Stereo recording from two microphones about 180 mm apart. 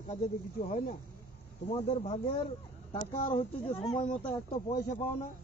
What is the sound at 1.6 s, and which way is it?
Speech, 35° left (ahead or behind).